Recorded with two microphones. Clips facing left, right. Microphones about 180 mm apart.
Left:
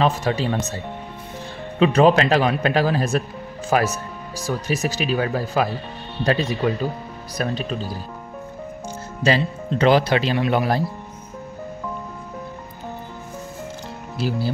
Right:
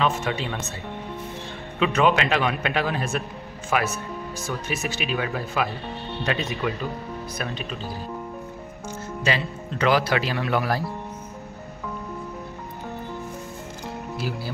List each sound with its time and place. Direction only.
0.0 s speech: 35° left (ahead or behind)
1.8 s speech: 35° left (ahead or behind)
9.2 s speech: 30° left (ahead or behind)
14.1 s speech: 30° left (ahead or behind)